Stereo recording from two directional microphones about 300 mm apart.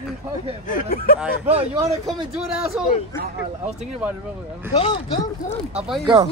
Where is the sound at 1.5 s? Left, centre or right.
Centre.